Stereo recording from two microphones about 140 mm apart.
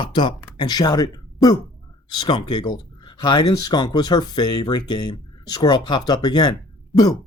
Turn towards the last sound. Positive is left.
turn(degrees=30)  # may be behind; listen again after turning